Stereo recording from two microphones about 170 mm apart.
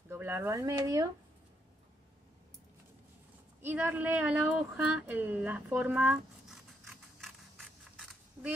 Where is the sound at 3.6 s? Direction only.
10° right (ahead or behind).